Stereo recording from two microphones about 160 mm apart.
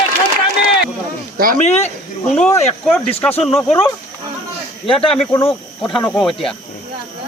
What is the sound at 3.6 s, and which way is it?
Speech, 10° left (ahead or behind).